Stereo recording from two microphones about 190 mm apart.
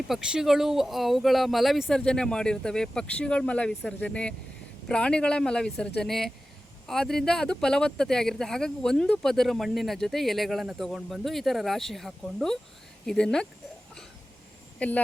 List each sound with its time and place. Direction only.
0.1 s speech: 5° right (ahead or behind)
14.8 s speech: 10° left (ahead or behind)